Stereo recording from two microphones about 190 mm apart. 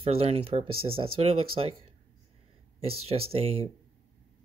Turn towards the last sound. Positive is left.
turn(degrees=-30)  # may be behind; listen again after turning